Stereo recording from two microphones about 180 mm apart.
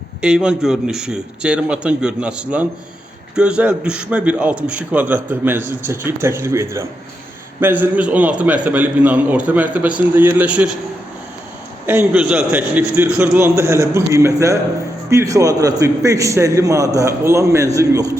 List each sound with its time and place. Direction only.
0.2 s a man's voice: 5° right (ahead or behind)
11.9 s a man's voice: 5° right (ahead or behind)